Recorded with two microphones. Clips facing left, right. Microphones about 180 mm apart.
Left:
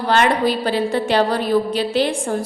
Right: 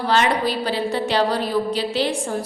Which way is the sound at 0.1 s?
55° left (ahead or behind).